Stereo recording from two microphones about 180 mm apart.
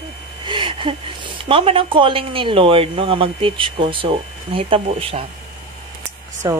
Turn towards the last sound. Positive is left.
turn(degrees=-20)  # may be behind; listen again after turning